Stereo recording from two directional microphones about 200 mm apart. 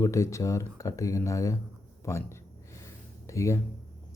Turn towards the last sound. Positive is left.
turn(degrees=15)  # may be behind; listen again after turning